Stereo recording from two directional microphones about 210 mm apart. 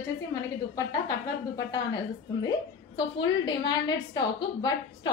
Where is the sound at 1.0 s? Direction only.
20° left (ahead or behind).